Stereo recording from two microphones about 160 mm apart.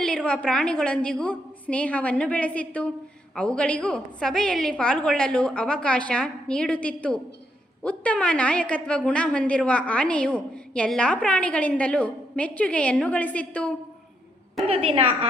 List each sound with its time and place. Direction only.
0.3 s a woman's voice: 5° left (ahead or behind)
14.7 s a woman's voice: 35° right (ahead or behind)